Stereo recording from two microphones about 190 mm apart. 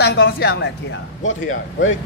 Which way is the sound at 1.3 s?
90° left.